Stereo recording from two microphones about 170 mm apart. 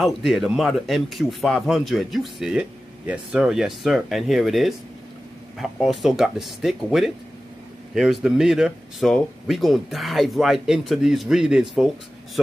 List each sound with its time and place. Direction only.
0.0 s speech: centre (ahead or behind)